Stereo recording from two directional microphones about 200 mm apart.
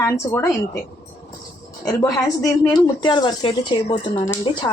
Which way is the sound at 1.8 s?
20° left (ahead or behind).